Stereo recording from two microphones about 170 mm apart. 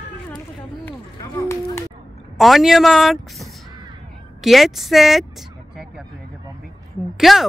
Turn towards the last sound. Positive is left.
turn(degrees=0)  # may be behind; listen again after turning